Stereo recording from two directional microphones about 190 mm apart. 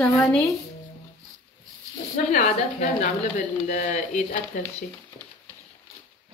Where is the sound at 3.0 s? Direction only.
40° left (ahead or behind).